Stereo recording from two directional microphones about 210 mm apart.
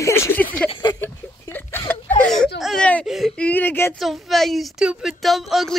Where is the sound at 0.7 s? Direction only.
20° left (ahead or behind).